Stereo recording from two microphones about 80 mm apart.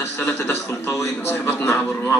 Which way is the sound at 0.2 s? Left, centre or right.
Left.